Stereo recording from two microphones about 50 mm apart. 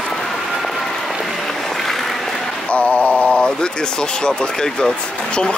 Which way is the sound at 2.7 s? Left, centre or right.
Left.